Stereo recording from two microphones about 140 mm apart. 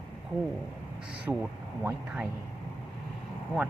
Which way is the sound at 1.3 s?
15° right (ahead or behind).